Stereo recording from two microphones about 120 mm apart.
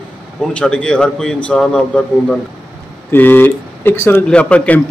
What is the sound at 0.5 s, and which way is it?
Speech, 10° left (ahead or behind).